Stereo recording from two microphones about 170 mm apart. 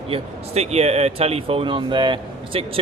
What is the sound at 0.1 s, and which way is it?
Speech, 35° right (ahead or behind).